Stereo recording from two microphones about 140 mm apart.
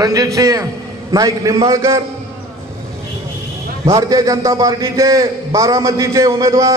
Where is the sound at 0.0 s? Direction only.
25° right (ahead or behind).